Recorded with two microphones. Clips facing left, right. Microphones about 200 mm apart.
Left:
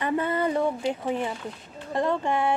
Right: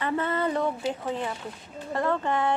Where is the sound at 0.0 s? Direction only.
15° left (ahead or behind).